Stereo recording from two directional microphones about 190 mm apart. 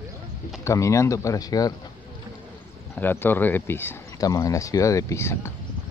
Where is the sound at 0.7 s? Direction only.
15° left (ahead or behind).